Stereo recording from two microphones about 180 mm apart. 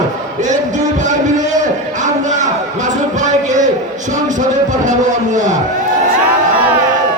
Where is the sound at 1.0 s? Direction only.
45° right (ahead or behind).